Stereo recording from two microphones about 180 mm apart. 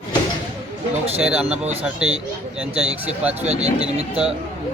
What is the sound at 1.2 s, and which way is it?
Speech, 5° right (ahead or behind).